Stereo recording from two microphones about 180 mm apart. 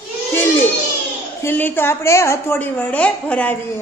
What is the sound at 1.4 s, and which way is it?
A woman's voice, 10° left (ahead or behind).